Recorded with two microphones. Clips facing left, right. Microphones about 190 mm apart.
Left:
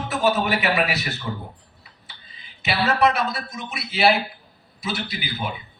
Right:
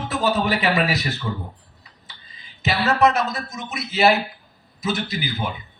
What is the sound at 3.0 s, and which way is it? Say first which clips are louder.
A man's voice: right 2 dB; 45° right (ahead or behind).